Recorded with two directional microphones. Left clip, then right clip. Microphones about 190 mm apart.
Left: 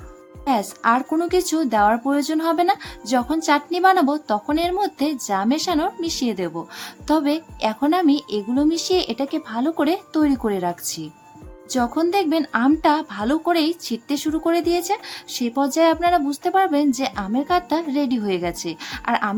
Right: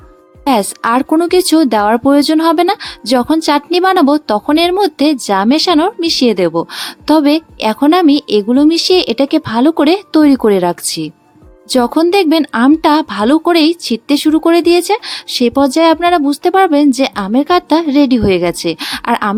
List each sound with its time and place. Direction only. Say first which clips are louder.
0.4 s speech: right 7 dB; 45° right (ahead or behind)